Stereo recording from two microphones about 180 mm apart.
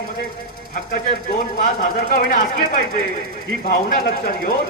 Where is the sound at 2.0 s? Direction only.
50° left (ahead or behind).